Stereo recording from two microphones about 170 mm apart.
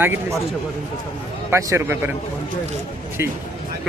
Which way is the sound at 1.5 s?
15° right (ahead or behind).